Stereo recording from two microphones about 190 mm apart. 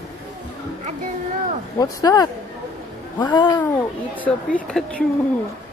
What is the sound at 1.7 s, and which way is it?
Speech, 20° left (ahead or behind).